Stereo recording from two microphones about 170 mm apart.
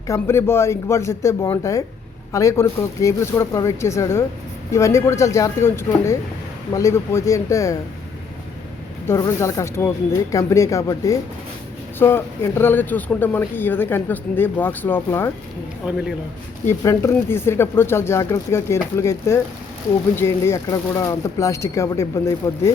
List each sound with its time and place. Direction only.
0.1 s a man's voice: 15° left (ahead or behind)
9.0 s a man's voice: 15° left (ahead or behind)
15.9 s a man's voice: 5° right (ahead or behind)
16.6 s a man's voice: 15° left (ahead or behind)